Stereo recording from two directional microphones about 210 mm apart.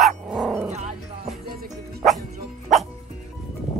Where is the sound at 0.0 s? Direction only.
Centre (ahead or behind).